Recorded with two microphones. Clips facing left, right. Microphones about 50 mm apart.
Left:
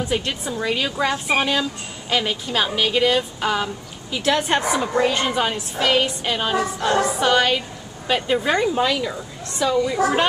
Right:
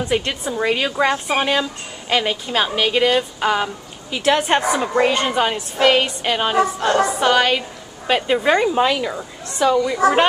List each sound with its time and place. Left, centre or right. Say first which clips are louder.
0.1 s a woman's voice: right 3 dB; right
6.9 s a woman's voice: left 1 dB; centre